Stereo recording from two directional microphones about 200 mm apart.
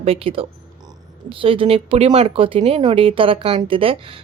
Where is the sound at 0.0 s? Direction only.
30° right (ahead or behind).